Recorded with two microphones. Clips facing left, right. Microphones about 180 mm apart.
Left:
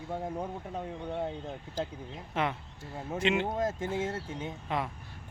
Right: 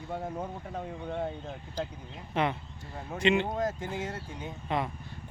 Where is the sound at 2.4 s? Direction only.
Centre (ahead or behind).